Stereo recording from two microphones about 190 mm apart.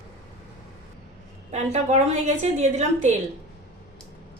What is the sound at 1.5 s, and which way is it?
A woman's voice, 35° right (ahead or behind).